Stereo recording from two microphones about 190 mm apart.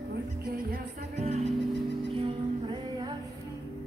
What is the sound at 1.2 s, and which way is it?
Music, 35° right (ahead or behind).